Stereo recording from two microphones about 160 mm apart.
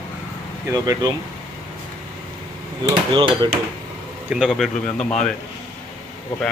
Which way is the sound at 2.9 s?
30° right (ahead or behind).